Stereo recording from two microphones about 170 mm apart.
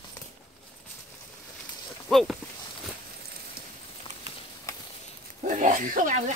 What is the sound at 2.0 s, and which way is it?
Speech, centre (ahead or behind).